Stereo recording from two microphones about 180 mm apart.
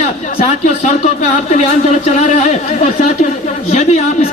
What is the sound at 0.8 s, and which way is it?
Speech, 40° left (ahead or behind).